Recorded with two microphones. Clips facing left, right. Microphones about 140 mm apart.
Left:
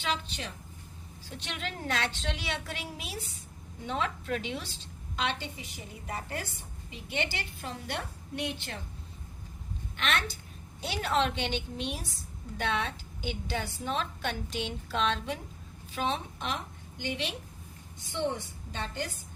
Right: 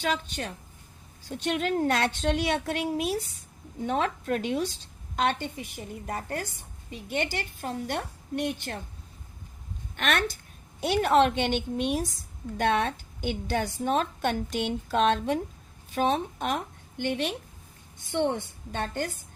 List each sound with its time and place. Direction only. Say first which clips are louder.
0.0 s a woman's voice: right 5 dB; 50° right (ahead or behind)
10.0 s a woman's voice: right 5 dB; 50° right (ahead or behind)